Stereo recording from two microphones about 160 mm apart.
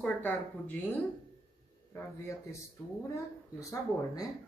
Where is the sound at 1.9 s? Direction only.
20° left (ahead or behind).